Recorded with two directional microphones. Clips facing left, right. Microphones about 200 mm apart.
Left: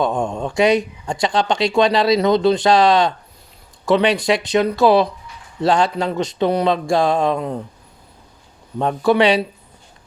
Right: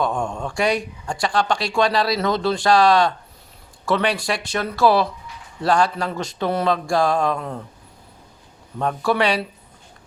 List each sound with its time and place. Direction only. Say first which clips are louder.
0.0 s speech: left 3 dB; 20° left (ahead or behind)
8.8 s speech: left 5 dB; 25° left (ahead or behind)